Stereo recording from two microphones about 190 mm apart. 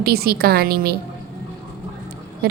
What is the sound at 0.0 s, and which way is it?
Speech, 55° right (ahead or behind).